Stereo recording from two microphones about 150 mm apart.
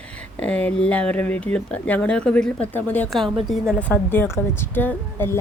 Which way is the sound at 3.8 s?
10° left (ahead or behind).